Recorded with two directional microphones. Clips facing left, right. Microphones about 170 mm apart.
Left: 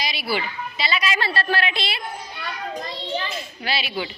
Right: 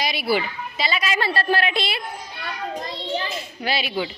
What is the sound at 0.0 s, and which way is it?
A woman's voice, 55° right (ahead or behind).